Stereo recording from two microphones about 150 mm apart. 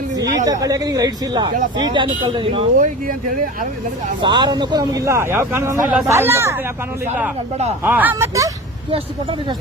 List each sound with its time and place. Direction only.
0.2 s speech: 25° right (ahead or behind)
2.7 s speech: 60° right (ahead or behind)
4.2 s speech: 30° right (ahead or behind)
7.9 s speech: 15° right (ahead or behind)